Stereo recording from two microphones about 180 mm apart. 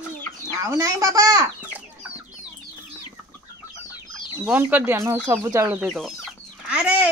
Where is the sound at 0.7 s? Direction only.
15° right (ahead or behind).